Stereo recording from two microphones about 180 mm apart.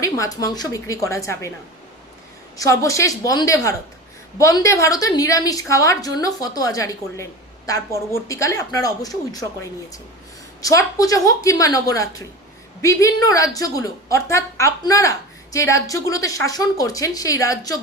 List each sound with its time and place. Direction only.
0.0 s a woman's voice: 20° left (ahead or behind)
2.6 s a woman's voice: 20° left (ahead or behind)
10.6 s a woman's voice: 20° left (ahead or behind)